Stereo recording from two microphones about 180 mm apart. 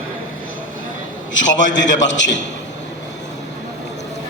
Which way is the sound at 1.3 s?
90° left.